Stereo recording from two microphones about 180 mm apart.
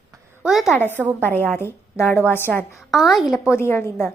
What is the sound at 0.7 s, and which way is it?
A woman's voice, 10° left (ahead or behind).